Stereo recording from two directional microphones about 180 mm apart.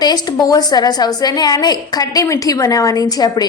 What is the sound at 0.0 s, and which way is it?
A woman's voice, 20° left (ahead or behind).